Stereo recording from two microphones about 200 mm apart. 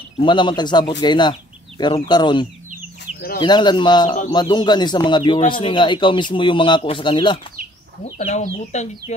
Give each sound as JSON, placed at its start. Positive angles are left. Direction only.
{"t": 0.2, "sound": "a man's voice", "side_deg": 25}
{"t": 8.2, "sound": "speech", "side_deg": 35}